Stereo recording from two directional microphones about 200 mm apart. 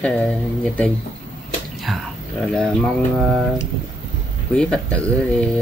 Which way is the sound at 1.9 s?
Centre (ahead or behind).